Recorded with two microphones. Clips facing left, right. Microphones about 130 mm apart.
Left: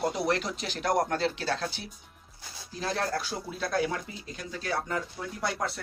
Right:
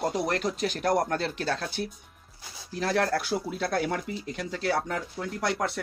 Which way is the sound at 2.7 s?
65° right (ahead or behind).